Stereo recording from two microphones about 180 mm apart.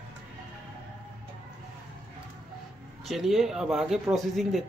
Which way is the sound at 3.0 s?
Centre (ahead or behind).